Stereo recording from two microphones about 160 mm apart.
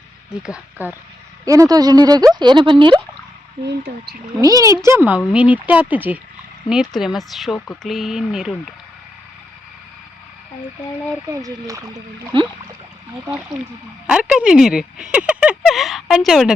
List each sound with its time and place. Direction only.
0.3 s speech: 5° right (ahead or behind)
1.5 s speech: 20° right (ahead or behind)
4.4 s speech: 20° right (ahead or behind); by 8.5 s centre (ahead or behind)
11.3 s speech: 20° right (ahead or behind)
14.1 s speech: 5° right (ahead or behind)